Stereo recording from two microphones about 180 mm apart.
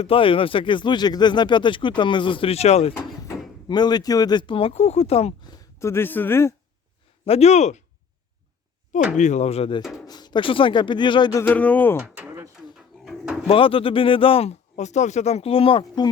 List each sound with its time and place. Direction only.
0.0 s speech: 30° left (ahead or behind)
2.9 s speech: 20° left (ahead or behind)
5.8 s a man's voice: 15° left (ahead or behind)
7.3 s speech: 35° left (ahead or behind)
9.1 s speech: 40° left (ahead or behind); by 11.9 s 10° left (ahead or behind)
11.9 s a sound: 5° right (ahead or behind)
13.1 s bird: centre (ahead or behind)
13.5 s speech: 30° left (ahead or behind)